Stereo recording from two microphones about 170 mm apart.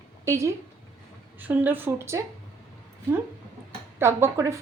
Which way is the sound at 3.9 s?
15° right (ahead or behind).